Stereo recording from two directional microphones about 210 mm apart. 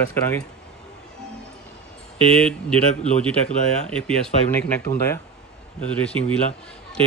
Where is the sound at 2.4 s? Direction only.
5° left (ahead or behind).